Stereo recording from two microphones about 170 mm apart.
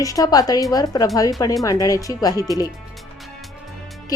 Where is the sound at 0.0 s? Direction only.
20° left (ahead or behind).